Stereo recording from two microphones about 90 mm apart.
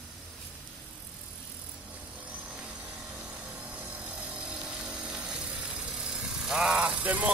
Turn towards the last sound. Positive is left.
turn(degrees=-15)  # may be behind; listen again after turning